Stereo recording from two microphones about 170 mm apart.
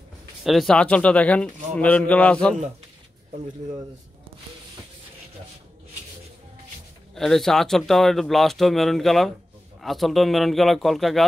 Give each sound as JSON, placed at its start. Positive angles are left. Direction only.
{"t": 0.4, "sound": "a man's voice", "side_deg": 0}
{"t": 7.2, "sound": "speech", "side_deg": 0}